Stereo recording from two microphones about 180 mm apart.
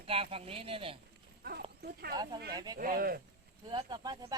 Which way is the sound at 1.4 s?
60° right (ahead or behind).